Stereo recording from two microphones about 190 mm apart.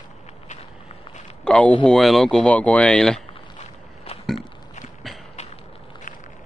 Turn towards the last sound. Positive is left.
turn(degrees=40)  # may be behind; listen again after turning